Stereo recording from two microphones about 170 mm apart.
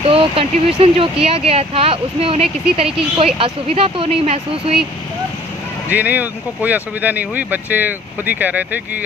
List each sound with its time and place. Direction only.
0.0 s speech: 35° right (ahead or behind)
5.9 s speech: 10° right (ahead or behind)